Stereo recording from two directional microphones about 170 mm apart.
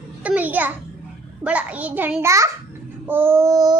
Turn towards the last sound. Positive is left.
turn(degrees=-20)  # may be behind; listen again after turning